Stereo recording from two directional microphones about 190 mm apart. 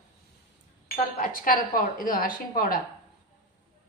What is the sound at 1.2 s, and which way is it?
A woman's voice, 45° left (ahead or behind).